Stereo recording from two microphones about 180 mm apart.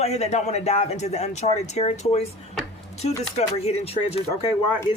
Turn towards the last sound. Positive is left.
turn(degrees=25)  # may be behind; listen again after turning